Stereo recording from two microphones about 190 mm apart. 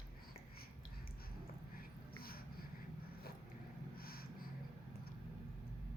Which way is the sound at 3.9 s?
50° left (ahead or behind).